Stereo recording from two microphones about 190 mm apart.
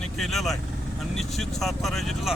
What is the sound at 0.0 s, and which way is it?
Speech, centre (ahead or behind).